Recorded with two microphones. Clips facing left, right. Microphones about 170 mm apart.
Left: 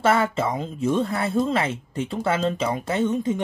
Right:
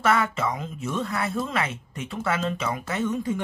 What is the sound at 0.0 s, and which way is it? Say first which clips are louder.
Speech: left 3 dB; 30° left (ahead or behind).